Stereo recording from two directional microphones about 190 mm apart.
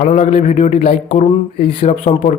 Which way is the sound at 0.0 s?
35° left (ahead or behind).